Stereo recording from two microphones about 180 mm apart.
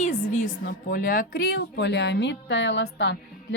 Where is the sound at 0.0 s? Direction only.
45° left (ahead or behind).